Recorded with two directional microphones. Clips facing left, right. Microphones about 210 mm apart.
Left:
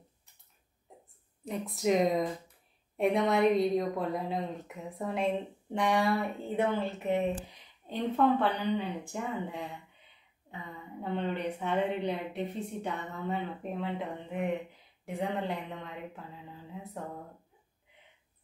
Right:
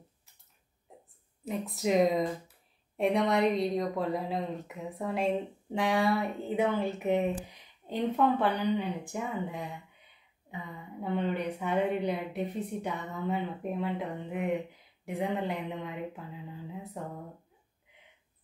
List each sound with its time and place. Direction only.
1.4 s a woman's voice: centre (ahead or behind)
6.8 s a woman's voice: 15° right (ahead or behind)
11.0 s a woman's voice: 10° right (ahead or behind)
15.0 s a woman's voice: 15° right (ahead or behind)